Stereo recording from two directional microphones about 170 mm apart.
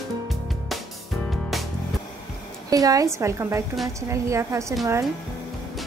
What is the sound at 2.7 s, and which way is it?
A woman's voice, 20° right (ahead or behind).